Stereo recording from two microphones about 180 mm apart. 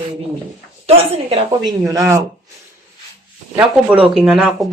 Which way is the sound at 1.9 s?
15° right (ahead or behind).